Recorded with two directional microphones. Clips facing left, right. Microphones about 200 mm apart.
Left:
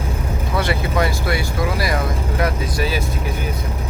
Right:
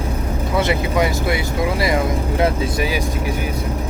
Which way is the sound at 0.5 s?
20° right (ahead or behind).